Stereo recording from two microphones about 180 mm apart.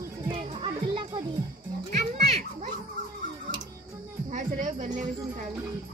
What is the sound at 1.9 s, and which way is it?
Children playing, 40° right (ahead or behind).